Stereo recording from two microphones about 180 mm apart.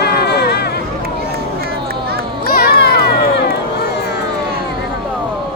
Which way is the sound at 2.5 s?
60° left (ahead or behind).